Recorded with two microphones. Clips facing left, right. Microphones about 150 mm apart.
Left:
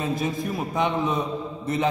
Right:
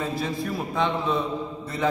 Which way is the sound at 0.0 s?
20° left (ahead or behind).